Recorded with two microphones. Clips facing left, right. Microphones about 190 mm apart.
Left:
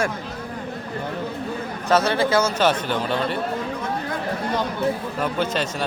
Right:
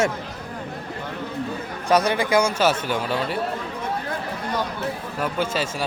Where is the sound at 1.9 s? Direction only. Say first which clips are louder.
Even; 15° right (ahead or behind).